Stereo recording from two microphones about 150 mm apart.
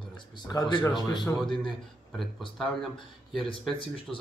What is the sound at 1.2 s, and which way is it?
Speech, centre (ahead or behind).